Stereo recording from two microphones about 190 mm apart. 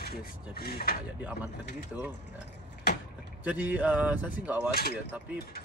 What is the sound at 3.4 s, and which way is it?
Speech, 10° right (ahead or behind).